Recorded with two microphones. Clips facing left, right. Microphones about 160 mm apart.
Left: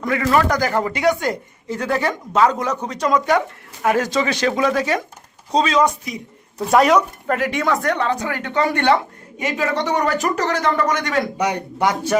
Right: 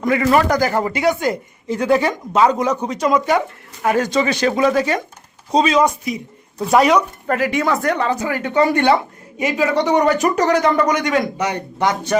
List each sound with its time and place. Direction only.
0.0 s speech: 15° right (ahead or behind)
1.6 s speech: 15° right (ahead or behind)
11.3 s speech: 15° left (ahead or behind)